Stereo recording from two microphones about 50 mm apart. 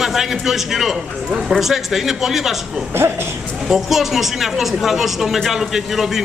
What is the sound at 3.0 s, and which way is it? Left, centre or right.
Speech, right.